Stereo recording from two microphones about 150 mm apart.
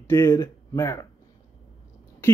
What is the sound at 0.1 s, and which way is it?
Speech, 20° left (ahead or behind).